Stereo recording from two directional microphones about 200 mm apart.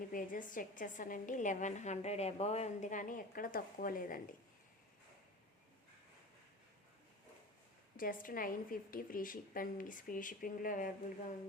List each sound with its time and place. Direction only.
0.1 s a woman's voice: 40° left (ahead or behind)
7.9 s a woman's voice: 45° left (ahead or behind)